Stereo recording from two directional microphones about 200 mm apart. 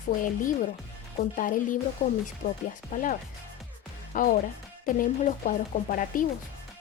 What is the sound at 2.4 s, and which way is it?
Speech, 55° left (ahead or behind).